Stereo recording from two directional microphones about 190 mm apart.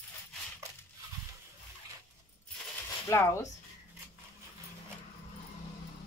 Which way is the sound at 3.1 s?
15° left (ahead or behind).